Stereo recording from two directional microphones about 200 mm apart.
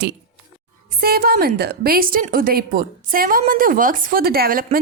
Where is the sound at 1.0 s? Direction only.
50° right (ahead or behind).